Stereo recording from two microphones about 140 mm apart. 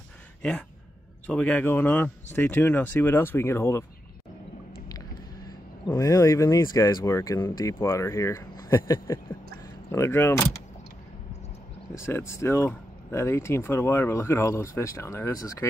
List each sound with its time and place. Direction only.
0.4 s speech: 5° left (ahead or behind)
5.9 s speech: 25° left (ahead or behind)
11.9 s speech: 20° left (ahead or behind)